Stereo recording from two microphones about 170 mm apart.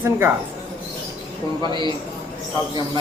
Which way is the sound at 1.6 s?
25° right (ahead or behind).